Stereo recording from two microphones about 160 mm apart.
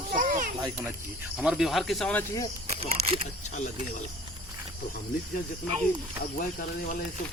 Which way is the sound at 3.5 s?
50° left (ahead or behind).